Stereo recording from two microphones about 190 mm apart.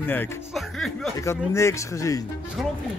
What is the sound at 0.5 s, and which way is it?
Music, centre (ahead or behind).